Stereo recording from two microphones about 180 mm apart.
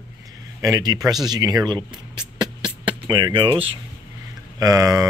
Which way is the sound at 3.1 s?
25° right (ahead or behind).